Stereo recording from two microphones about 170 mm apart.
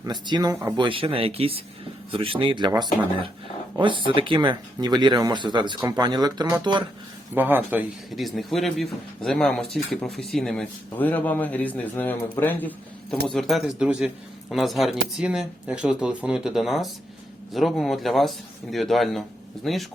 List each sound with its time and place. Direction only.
0.0 s speech: 25° right (ahead or behind)
0.8 s speech: 30° right (ahead or behind)
7.3 s speech: 10° right (ahead or behind)
8.2 s speech: centre (ahead or behind)